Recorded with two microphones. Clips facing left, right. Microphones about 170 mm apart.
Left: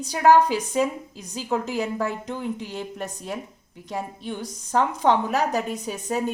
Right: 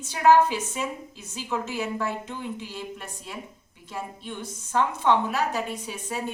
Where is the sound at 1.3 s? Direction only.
40° left (ahead or behind).